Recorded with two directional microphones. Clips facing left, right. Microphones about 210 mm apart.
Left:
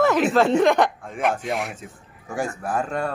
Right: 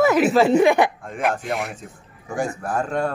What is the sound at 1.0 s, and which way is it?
Speech, 5° left (ahead or behind).